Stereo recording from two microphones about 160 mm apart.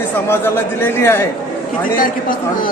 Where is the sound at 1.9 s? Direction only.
60° left (ahead or behind).